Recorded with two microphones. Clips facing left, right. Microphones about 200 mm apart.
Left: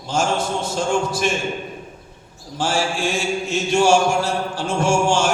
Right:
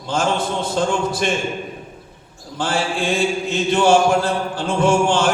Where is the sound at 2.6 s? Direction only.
60° right (ahead or behind).